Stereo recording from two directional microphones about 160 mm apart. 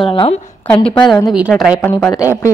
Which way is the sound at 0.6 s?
5° left (ahead or behind).